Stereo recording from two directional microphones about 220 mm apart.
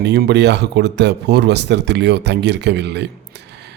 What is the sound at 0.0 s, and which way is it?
Speech, 50° right (ahead or behind).